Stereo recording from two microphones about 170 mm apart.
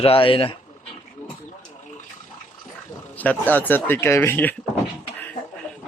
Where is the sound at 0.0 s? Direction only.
30° left (ahead or behind).